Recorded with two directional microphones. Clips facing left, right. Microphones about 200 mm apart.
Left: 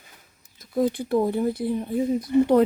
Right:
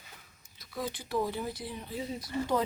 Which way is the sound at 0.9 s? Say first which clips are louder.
Left 10 dB; 55° left (ahead or behind).